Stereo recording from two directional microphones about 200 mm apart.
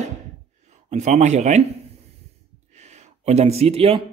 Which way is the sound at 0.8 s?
35° right (ahead or behind).